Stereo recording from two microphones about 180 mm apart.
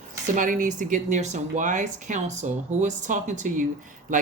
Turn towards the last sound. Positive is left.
turn(degrees=-45)  # may be behind; listen again after turning